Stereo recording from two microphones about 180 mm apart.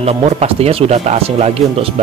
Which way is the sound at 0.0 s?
35° right (ahead or behind).